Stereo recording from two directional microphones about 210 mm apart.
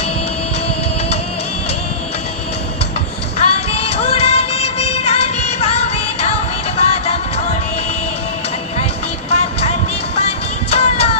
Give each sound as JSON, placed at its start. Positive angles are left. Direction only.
{"t": 3.3, "sound": "music", "side_deg": 30}
{"t": 9.3, "sound": "music", "side_deg": 30}